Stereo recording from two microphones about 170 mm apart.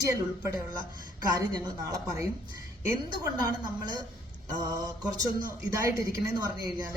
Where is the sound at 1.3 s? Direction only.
20° right (ahead or behind).